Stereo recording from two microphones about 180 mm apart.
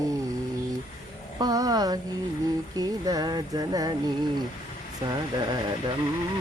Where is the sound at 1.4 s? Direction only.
20° right (ahead or behind).